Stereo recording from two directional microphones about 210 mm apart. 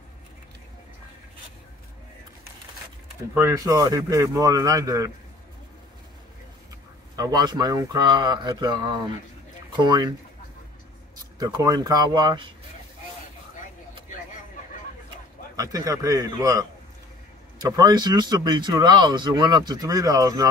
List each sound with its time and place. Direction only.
3.3 s speech: 15° right (ahead or behind)
7.2 s speech: 20° right (ahead or behind)
11.3 s speech: 15° right (ahead or behind)
15.5 s speech: 15° right (ahead or behind)